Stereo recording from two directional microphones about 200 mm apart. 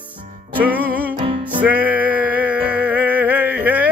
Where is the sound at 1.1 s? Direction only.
25° right (ahead or behind).